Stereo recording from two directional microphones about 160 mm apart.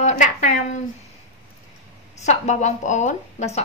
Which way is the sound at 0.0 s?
50° left (ahead or behind).